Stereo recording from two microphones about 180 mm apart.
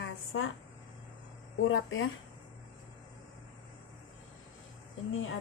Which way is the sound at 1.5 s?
90° left.